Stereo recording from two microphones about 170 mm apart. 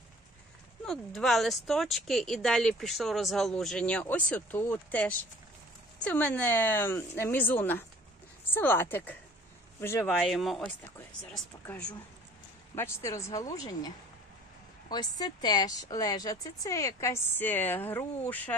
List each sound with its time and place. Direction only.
0.8 s speech: centre (ahead or behind)
10.0 s speech: centre (ahead or behind)
12.7 s speech: 15° left (ahead or behind)
15.1 s speech: 25° left (ahead or behind)